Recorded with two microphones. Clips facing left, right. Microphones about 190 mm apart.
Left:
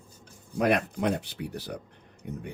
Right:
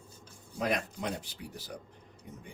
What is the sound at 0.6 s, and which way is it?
Speech, 65° left (ahead or behind).